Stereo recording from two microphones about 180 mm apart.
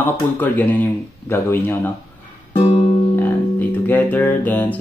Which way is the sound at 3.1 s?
10° left (ahead or behind).